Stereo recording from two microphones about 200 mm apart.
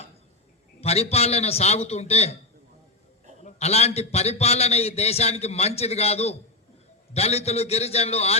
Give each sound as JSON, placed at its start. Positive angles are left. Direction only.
{"t": 0.8, "sound": "a man's voice", "side_deg": 30}
{"t": 3.4, "sound": "a man's voice", "side_deg": 30}